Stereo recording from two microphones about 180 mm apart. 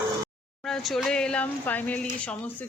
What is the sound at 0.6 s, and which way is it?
Speech, centre (ahead or behind).